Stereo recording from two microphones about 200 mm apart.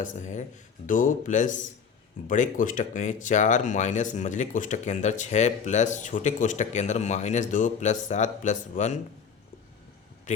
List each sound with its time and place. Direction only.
0.0 s speech: 40° left (ahead or behind)
10.3 s speech: 40° left (ahead or behind)